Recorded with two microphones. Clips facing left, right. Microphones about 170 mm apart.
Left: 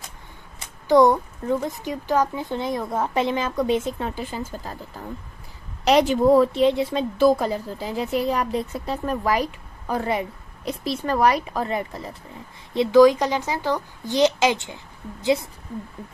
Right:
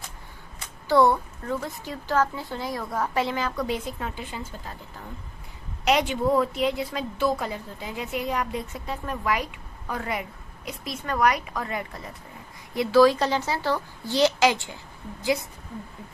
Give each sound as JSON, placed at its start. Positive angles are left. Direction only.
{"t": 0.8, "sound": "a woman's voice", "side_deg": 15}
{"t": 4.1, "sound": "a woman's voice", "side_deg": 35}
{"t": 5.9, "sound": "a woman's voice", "side_deg": 35}
{"t": 7.2, "sound": "a woman's voice", "side_deg": 40}